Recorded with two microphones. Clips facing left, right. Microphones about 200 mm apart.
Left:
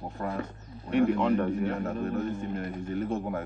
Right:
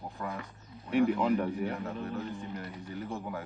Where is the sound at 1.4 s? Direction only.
15° right (ahead or behind).